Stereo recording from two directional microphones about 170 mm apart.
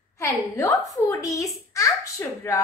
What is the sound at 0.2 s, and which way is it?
A woman's voice, 15° left (ahead or behind).